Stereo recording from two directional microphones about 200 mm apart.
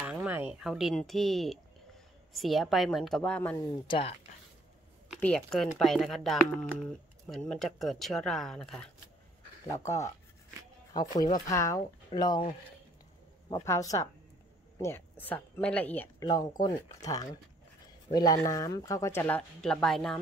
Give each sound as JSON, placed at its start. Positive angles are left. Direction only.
{"t": 0.0, "sound": "a sound", "side_deg": -5}
{"t": 0.5, "sound": "speech", "side_deg": -5}
{"t": 3.8, "sound": "speech", "side_deg": 25}
{"t": 5.2, "sound": "speech", "side_deg": 5}
{"t": 9.8, "sound": "a woman's voice", "side_deg": 15}